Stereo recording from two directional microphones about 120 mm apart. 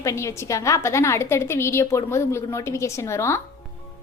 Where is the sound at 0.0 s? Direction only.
25° left (ahead or behind).